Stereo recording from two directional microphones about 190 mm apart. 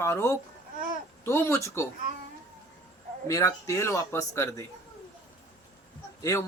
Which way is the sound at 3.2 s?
15° left (ahead or behind).